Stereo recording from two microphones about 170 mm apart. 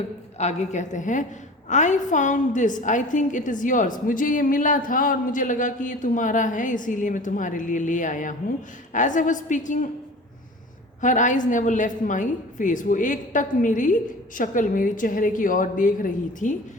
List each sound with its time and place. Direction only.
0.3 s a woman's voice: 40° left (ahead or behind)
11.0 s a woman's voice: 45° left (ahead or behind)